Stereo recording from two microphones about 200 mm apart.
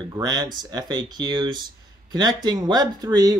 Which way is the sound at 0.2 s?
20° right (ahead or behind).